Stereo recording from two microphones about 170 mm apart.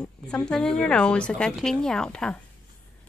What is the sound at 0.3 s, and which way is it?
Speech, 5° left (ahead or behind).